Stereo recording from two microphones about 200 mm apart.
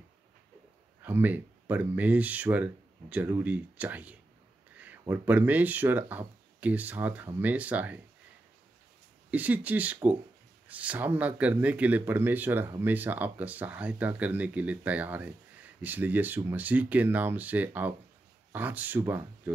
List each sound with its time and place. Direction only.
1.0 s speech: 10° right (ahead or behind)
9.3 s speech: 10° right (ahead or behind)